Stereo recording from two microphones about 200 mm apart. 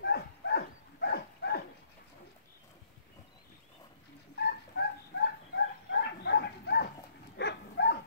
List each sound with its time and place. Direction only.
0.0 s dog: 55° left (ahead or behind)
4.4 s dog: 55° left (ahead or behind)